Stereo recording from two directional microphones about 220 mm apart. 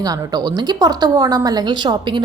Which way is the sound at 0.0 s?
15° right (ahead or behind).